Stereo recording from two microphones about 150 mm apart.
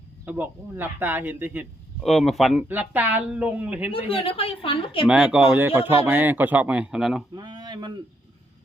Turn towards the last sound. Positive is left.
turn(degrees=-30)  # may be behind; listen again after turning